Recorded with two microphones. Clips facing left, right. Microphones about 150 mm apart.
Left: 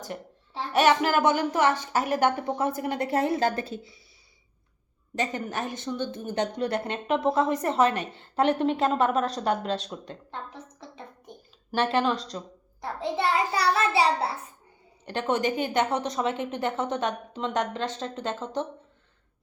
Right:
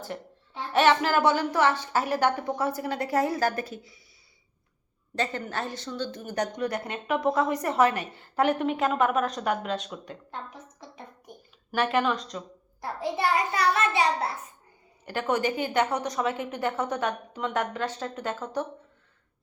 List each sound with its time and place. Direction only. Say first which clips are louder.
0.7 s speech: even; 15° left (ahead or behind)
5.1 s speech: even; 15° left (ahead or behind); by 12.4 s 35° left (ahead or behind)
12.8 s speech: left 1 dB; 25° left (ahead or behind)